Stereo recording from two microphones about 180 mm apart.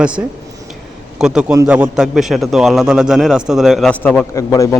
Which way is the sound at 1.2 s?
5° right (ahead or behind).